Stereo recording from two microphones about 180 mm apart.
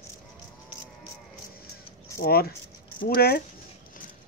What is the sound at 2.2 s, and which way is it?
Speech, 55° left (ahead or behind).